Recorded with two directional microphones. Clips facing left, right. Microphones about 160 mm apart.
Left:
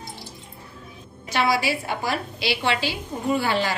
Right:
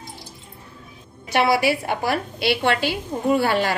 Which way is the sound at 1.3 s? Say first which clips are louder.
Right 4 dB; 60° right (ahead or behind).